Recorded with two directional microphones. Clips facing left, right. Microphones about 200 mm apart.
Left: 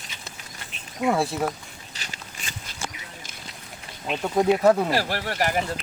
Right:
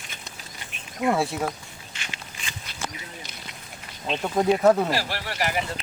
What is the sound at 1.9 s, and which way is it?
Biting, 40° left (ahead or behind).